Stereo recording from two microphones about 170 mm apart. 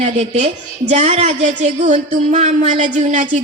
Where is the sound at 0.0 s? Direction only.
40° right (ahead or behind).